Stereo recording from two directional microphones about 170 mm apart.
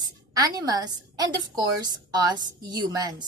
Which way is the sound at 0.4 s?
20° right (ahead or behind).